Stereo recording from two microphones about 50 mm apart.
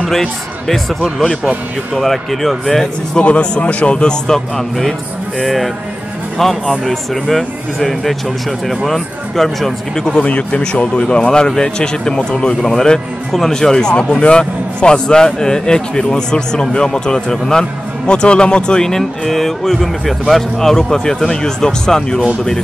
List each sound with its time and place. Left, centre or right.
0.1 s speech: centre
2.0 s speech: centre
3.2 s speech: left; by 10.1 s centre
10.2 s speech: left